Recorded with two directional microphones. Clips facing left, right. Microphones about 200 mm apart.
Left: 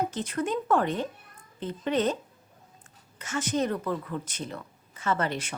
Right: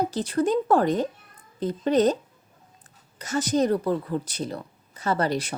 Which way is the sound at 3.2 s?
35° right (ahead or behind).